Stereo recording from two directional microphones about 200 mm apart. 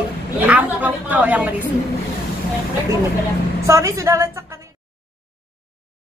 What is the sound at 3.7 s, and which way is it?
Speech, 15° right (ahead or behind).